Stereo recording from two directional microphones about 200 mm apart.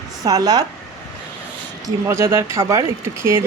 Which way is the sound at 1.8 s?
15° right (ahead or behind).